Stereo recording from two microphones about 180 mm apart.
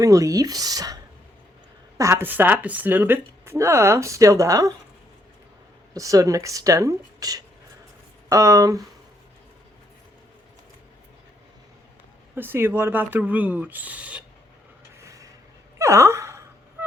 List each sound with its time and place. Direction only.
0.0 s speech: 20° right (ahead or behind)
2.0 s speech: 15° right (ahead or behind)
5.9 s speech: 20° right (ahead or behind)
12.3 s speech: 10° right (ahead or behind)
15.0 s a sound: 20° right (ahead or behind)
15.8 s gasp: 15° right (ahead or behind)